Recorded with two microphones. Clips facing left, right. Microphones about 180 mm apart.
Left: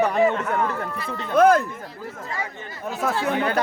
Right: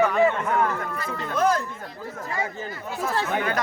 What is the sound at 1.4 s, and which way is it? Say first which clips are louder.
Speech: left 7 dB; 55° left (ahead or behind).